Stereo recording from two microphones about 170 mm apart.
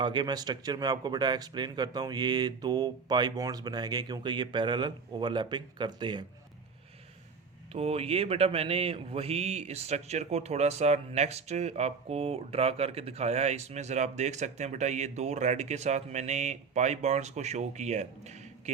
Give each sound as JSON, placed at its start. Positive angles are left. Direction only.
{"t": 0.0, "sound": "speech", "side_deg": -25}
{"t": 7.7, "sound": "speech", "side_deg": -35}